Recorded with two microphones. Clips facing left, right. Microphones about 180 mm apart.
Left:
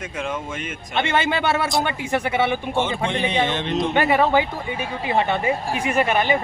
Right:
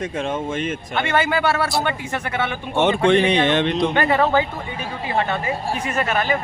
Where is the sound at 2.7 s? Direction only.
70° right (ahead or behind).